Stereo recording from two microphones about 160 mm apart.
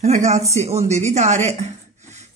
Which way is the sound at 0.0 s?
50° right (ahead or behind).